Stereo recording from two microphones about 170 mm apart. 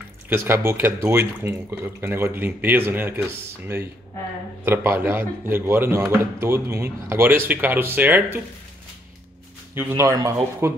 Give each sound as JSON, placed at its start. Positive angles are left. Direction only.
{"t": 0.3, "sound": "speech", "side_deg": -15}
{"t": 9.8, "sound": "speech", "side_deg": -15}